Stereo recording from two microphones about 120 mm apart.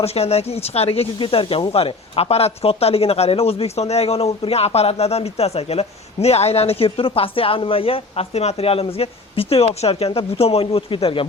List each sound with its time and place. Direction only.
0.0 s speech: 60° left (ahead or behind)